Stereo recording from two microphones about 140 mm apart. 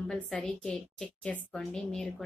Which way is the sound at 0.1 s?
5° left (ahead or behind).